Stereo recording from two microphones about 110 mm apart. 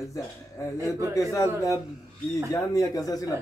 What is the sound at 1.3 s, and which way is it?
A man's voice, 30° left (ahead or behind).